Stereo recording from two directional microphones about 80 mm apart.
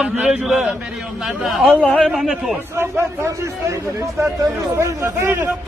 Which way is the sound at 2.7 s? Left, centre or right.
Right.